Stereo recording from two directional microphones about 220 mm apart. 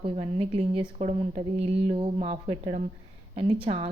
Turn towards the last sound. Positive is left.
turn(degrees=-25)  # may be behind; listen again after turning